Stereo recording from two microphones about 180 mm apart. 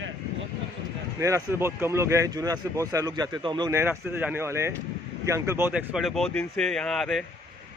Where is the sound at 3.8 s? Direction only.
10° right (ahead or behind).